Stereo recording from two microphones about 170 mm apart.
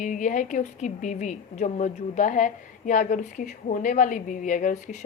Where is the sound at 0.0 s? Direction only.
50° left (ahead or behind).